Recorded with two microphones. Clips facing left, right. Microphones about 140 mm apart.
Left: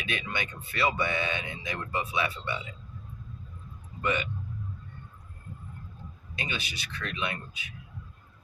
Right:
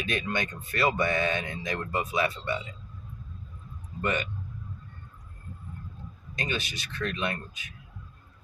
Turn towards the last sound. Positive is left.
turn(degrees=-45)  # may be behind; listen again after turning